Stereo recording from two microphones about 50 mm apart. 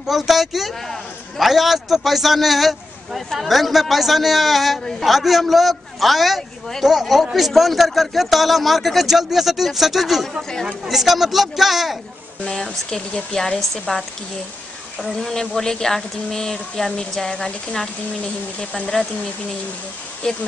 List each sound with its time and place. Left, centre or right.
0.1 s a man's voice: centre
12.4 s speech: centre
15.1 s speech: centre
20.2 s speech: centre